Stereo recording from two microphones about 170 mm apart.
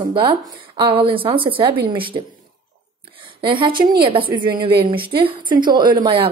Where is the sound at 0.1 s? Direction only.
30° right (ahead or behind).